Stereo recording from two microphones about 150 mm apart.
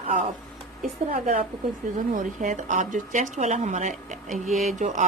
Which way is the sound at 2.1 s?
60° right (ahead or behind).